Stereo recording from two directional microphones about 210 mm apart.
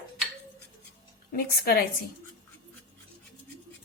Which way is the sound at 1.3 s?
45° left (ahead or behind).